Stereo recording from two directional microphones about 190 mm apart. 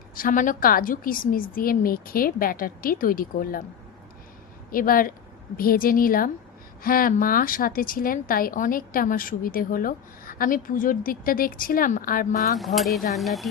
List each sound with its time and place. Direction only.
0.1 s a woman's voice: 45° left (ahead or behind)
4.7 s a woman's voice: 50° left (ahead or behind)
12.5 s speech: centre (ahead or behind)